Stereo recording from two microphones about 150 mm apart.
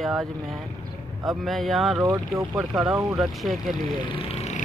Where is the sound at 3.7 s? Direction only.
35° left (ahead or behind).